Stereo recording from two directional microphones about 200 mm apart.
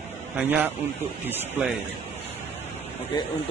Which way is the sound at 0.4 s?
10° right (ahead or behind).